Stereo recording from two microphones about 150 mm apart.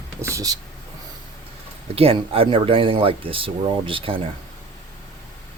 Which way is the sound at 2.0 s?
40° right (ahead or behind).